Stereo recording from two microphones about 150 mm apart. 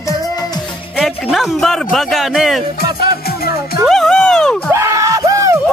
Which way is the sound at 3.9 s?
5° left (ahead or behind).